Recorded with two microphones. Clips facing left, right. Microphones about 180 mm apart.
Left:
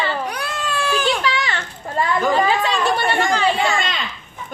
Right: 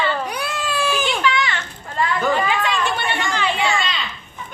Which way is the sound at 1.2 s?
35° left (ahead or behind).